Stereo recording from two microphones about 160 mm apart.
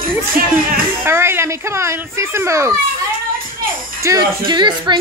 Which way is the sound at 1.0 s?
15° right (ahead or behind).